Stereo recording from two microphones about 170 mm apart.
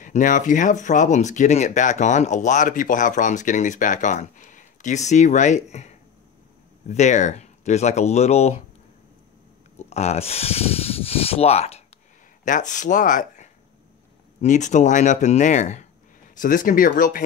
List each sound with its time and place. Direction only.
0.0 s speech: 50° left (ahead or behind)
9.8 s speech: 40° left (ahead or behind)
12.4 s speech: 50° left (ahead or behind)